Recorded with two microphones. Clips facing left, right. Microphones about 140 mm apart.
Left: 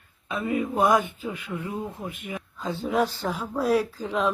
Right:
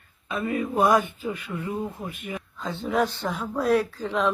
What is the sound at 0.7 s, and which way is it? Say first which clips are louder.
Speech: right 2 dB; 20° left (ahead or behind).